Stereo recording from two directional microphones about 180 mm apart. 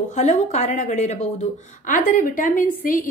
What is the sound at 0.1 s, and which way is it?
A woman's voice, 40° left (ahead or behind).